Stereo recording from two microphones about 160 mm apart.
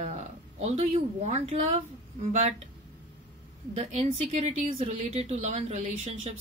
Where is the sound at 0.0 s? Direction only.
45° right (ahead or behind).